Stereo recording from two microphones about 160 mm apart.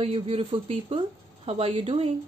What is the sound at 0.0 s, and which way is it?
Speech, 35° right (ahead or behind).